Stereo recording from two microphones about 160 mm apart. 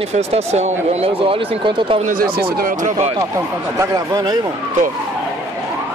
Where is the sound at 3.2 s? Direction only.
20° right (ahead or behind).